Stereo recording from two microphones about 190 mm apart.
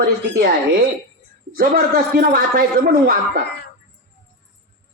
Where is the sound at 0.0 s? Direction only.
50° right (ahead or behind).